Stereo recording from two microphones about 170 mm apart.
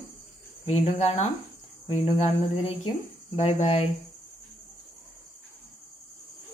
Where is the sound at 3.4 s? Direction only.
40° left (ahead or behind).